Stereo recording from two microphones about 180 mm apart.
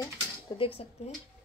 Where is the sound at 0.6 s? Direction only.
30° left (ahead or behind).